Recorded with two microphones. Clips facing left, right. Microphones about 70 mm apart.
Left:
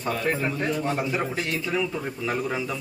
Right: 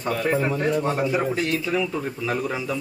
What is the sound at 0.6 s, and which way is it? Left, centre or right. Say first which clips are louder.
Speech: right 4 dB; right.